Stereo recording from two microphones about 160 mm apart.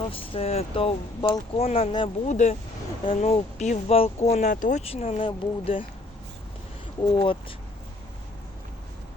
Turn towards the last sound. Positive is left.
turn(degrees=30)  # may be behind; listen again after turning